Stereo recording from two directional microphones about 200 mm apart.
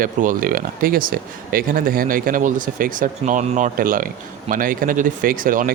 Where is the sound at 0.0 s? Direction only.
45° right (ahead or behind).